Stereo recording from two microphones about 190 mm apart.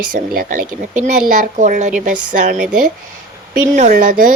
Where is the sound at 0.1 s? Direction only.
45° right (ahead or behind).